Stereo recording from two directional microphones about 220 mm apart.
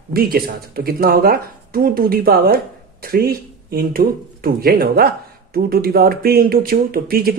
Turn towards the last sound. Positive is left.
turn(degrees=-45)  # may be behind; listen again after turning